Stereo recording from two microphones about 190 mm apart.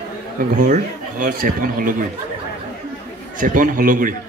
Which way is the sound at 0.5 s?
45° right (ahead or behind).